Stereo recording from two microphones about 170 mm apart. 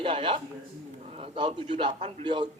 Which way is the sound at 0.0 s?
30° right (ahead or behind).